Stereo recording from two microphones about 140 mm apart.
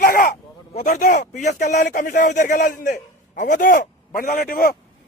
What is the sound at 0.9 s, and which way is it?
Speech, 70° left (ahead or behind).